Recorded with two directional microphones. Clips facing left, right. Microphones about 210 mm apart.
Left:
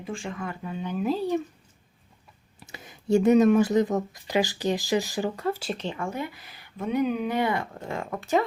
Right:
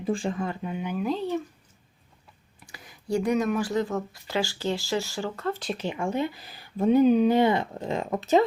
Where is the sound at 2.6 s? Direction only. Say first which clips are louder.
Left 6 dB; 25° left (ahead or behind); by 5.8 s 10° left (ahead or behind).